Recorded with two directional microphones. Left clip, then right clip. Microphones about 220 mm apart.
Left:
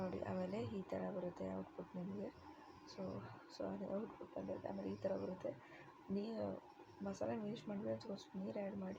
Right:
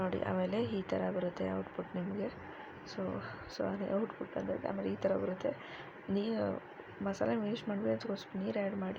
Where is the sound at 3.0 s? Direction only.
20° right (ahead or behind).